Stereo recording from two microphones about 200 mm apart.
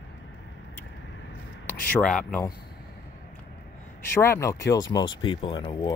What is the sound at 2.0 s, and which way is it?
Speech, 5° left (ahead or behind).